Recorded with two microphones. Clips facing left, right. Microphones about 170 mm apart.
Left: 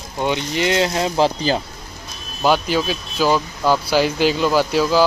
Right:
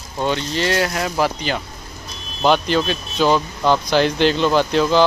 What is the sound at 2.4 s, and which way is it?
Speech, 5° left (ahead or behind).